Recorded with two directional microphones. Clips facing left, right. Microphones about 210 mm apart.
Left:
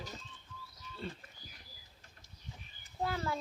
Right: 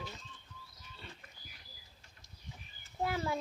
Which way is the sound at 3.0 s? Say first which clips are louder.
Right 1 dB; 20° right (ahead or behind).